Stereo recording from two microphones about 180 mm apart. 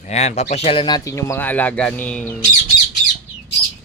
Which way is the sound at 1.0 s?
15° left (ahead or behind).